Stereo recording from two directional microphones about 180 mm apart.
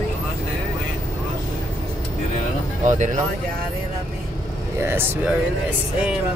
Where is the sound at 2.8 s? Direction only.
45° right (ahead or behind).